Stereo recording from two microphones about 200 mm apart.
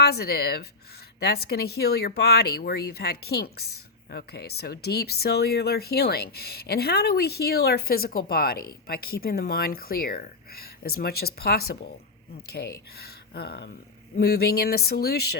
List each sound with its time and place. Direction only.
0.0 s speech: 50° left (ahead or behind)